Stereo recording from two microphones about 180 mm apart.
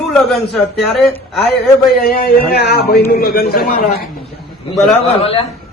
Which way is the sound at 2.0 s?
55° left (ahead or behind).